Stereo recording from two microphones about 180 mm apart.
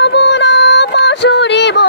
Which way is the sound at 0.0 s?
70° left (ahead or behind).